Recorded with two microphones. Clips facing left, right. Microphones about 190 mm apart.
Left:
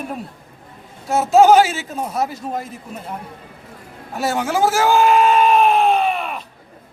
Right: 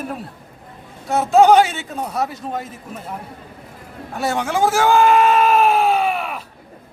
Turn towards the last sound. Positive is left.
turn(degrees=-5)  # may be behind; listen again after turning